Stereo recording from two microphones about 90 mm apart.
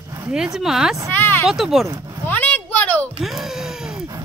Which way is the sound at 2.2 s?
20° left (ahead or behind).